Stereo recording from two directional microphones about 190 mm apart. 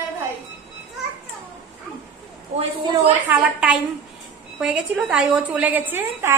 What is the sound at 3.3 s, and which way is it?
A woman's voice, 5° right (ahead or behind).